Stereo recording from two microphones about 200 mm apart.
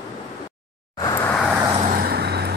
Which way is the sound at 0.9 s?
15° left (ahead or behind).